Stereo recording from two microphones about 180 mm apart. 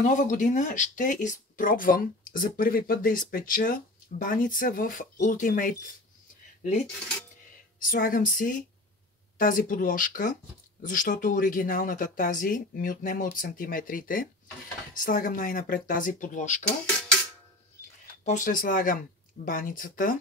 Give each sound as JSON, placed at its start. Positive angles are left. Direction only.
{"t": 0.0, "sound": "speech", "side_deg": 45}
{"t": 7.9, "sound": "speech", "side_deg": 50}
{"t": 18.2, "sound": "speech", "side_deg": 45}